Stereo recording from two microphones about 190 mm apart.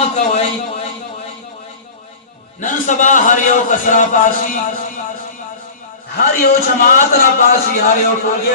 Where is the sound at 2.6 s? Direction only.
45° left (ahead or behind).